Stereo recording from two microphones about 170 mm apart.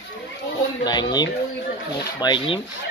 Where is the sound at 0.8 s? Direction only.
25° left (ahead or behind).